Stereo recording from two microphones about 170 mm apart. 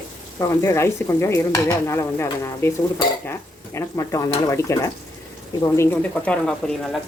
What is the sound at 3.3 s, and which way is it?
Speech, 15° left (ahead or behind).